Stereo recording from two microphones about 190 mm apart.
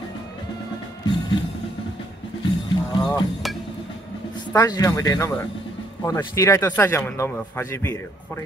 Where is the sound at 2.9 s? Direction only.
25° left (ahead or behind).